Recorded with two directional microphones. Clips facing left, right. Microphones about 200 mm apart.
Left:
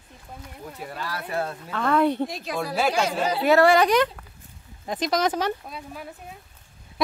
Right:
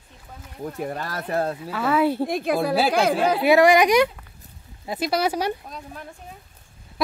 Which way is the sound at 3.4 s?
15° right (ahead or behind).